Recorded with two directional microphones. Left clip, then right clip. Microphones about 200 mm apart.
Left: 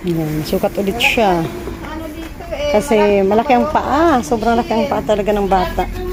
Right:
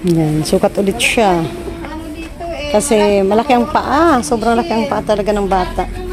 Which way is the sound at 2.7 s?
15° right (ahead or behind).